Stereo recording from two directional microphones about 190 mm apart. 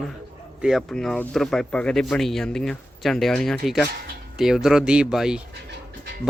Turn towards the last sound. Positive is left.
turn(degrees=-5)  # may be behind; listen again after turning